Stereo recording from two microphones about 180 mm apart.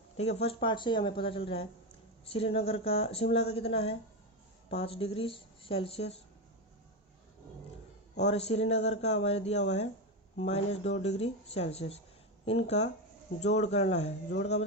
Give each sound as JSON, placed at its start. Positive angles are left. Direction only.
{"t": 0.2, "sound": "speech", "side_deg": 35}
{"t": 8.2, "sound": "speech", "side_deg": 35}